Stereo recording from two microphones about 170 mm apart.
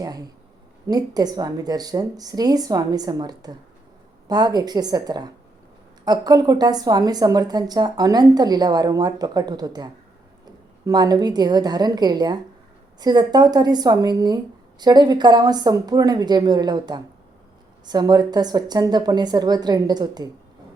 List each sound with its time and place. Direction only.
0.0 s a woman's voice: 20° right (ahead or behind)